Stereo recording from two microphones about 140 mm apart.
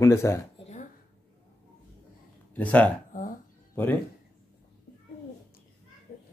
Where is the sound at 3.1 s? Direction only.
75° left (ahead or behind).